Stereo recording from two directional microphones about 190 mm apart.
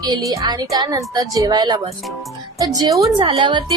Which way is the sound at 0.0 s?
20° right (ahead or behind).